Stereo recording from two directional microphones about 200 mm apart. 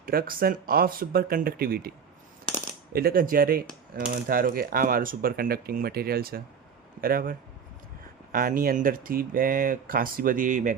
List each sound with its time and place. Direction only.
0.0 s speech: 45° right (ahead or behind)
2.9 s speech: 50° right (ahead or behind)